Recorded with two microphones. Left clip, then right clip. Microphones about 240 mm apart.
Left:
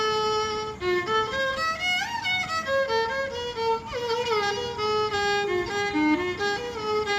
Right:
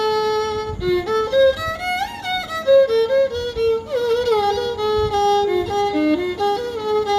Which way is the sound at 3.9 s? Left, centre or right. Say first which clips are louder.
Right 8 dB; centre.